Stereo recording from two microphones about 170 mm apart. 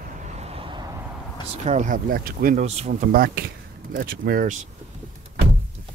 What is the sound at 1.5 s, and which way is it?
Speech, 40° right (ahead or behind).